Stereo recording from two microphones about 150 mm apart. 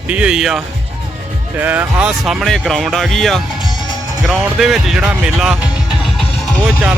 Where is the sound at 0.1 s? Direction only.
5° right (ahead or behind).